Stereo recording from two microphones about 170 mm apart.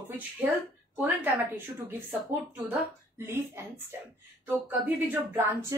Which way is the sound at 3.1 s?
15° right (ahead or behind).